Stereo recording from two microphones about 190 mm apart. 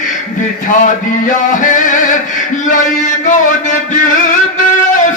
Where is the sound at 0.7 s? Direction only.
45° left (ahead or behind).